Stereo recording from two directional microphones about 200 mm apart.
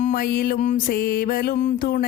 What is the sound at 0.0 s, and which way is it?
A woman's voice, 45° left (ahead or behind).